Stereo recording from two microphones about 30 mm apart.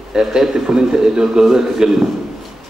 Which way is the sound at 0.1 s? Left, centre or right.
Centre.